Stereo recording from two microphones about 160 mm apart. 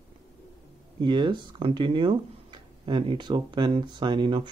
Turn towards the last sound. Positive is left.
turn(degrees=-30)  # may be behind; listen again after turning